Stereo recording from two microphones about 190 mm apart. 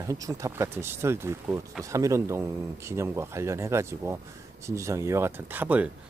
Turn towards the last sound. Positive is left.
turn(degrees=-10)  # may be behind; listen again after turning